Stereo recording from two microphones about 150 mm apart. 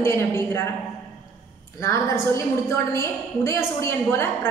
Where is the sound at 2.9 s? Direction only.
20° left (ahead or behind).